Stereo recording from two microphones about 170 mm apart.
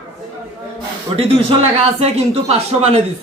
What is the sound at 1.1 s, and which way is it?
Speech, 35° right (ahead or behind).